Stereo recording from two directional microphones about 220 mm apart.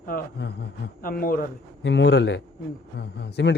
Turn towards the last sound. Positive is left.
turn(degrees=50)  # may be behind; listen again after turning